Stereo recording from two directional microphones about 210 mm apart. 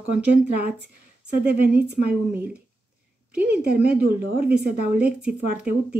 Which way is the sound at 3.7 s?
5° right (ahead or behind).